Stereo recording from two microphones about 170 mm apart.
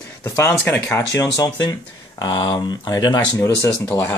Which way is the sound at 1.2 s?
20° left (ahead or behind).